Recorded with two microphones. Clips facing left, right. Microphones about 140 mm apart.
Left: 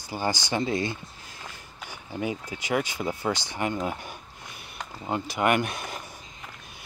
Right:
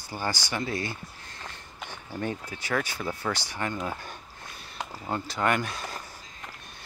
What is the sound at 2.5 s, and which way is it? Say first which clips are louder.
Speech: left 3 dB; 20° left (ahead or behind).